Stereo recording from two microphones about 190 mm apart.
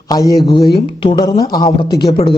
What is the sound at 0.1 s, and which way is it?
Speech, 20° left (ahead or behind).